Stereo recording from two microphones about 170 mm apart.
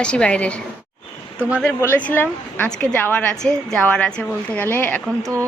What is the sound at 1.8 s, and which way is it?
A woman's voice, 10° left (ahead or behind).